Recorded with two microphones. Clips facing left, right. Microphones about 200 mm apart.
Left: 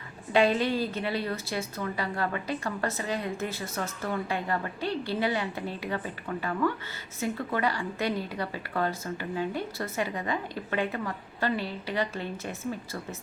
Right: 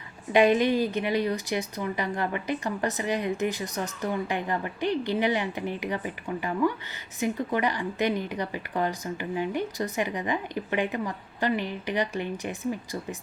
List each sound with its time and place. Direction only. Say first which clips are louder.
0.3 s a woman's voice: right 3 dB; 15° right (ahead or behind)